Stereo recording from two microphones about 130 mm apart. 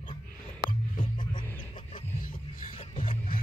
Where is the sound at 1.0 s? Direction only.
90° left.